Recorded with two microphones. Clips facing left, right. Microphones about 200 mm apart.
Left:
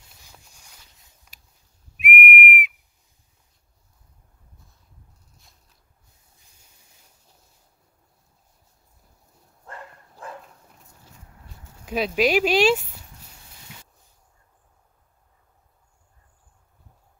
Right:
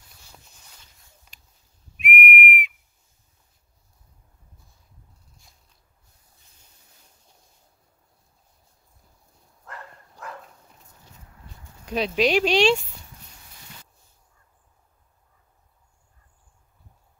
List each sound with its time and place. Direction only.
2.0 s whistle: centre (ahead or behind)
9.7 s dog: 30° left (ahead or behind)
11.6 s speech: 5° left (ahead or behind)